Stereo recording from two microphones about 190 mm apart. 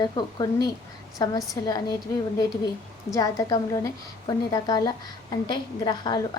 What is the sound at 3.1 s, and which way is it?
A woman's voice, 20° left (ahead or behind).